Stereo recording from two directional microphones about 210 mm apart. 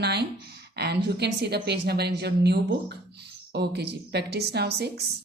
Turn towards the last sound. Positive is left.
turn(degrees=-50)  # may be behind; listen again after turning